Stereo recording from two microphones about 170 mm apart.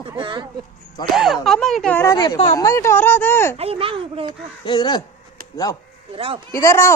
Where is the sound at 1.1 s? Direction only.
Centre (ahead or behind).